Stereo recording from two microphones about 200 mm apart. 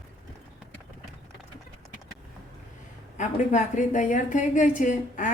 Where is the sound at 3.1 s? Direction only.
40° left (ahead or behind).